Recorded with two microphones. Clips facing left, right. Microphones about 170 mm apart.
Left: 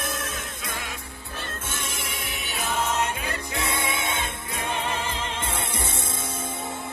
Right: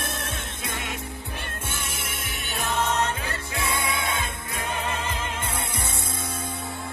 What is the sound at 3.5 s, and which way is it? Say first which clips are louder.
Music: right 1 dB; 25° left (ahead or behind).